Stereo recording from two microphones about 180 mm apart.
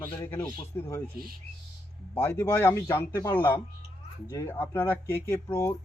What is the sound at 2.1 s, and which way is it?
Speech, 15° left (ahead or behind).